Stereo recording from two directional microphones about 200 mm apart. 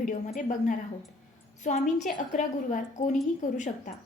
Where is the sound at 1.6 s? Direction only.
35° left (ahead or behind).